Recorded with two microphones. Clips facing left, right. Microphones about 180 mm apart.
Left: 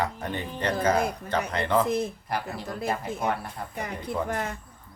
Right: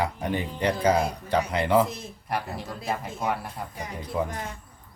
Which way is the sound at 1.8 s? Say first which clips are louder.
Left 10 dB; 60° left (ahead or behind).